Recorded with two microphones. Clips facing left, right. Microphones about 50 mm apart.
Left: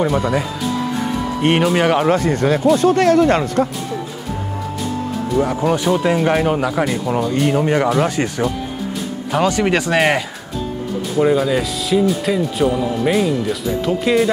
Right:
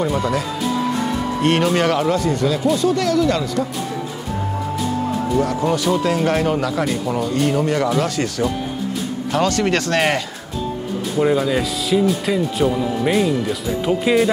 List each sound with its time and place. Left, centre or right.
0.0 s speech: centre
1.6 s speech: centre
2.0 s speech: left
5.4 s speech: centre